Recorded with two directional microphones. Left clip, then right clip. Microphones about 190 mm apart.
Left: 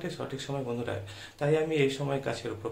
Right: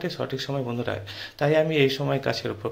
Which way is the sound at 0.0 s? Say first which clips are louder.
Right 7 dB; 30° right (ahead or behind).